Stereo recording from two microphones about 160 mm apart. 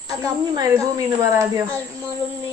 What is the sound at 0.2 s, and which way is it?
Speech, 20° right (ahead or behind).